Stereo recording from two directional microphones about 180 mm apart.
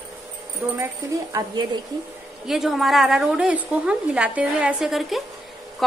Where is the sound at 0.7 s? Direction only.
20° right (ahead or behind).